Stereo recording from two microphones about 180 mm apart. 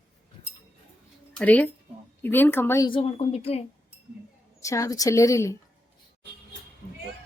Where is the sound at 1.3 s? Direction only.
5° left (ahead or behind).